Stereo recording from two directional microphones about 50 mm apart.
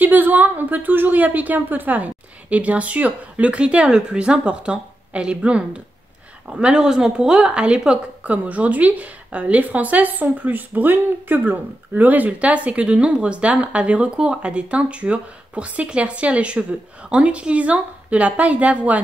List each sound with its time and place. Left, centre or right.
0.0 s a woman's voice: right; by 8.0 s centre
8.2 s a woman's voice: right